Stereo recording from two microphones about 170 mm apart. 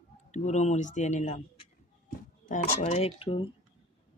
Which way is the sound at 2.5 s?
40° left (ahead or behind).